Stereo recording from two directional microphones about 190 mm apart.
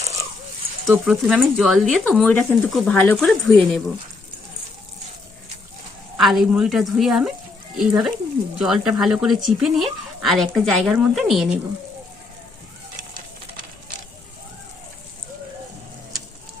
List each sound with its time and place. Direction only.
0.0 s a sound: 15° right (ahead or behind)
0.9 s speech: 5° right (ahead or behind)
6.1 s speech: centre (ahead or behind)